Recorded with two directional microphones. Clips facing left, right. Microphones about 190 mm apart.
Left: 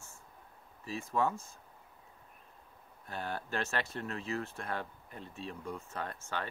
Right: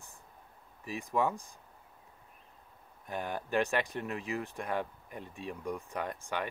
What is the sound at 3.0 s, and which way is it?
Speech, 15° right (ahead or behind).